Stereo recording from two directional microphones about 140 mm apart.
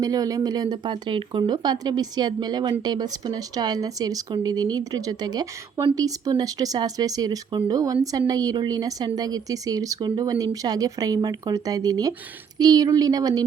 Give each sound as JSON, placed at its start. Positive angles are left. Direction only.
{"t": 0.0, "sound": "speech", "side_deg": -25}